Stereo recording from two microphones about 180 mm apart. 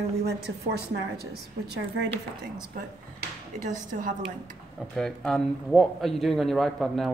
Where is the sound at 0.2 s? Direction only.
65° right (ahead or behind).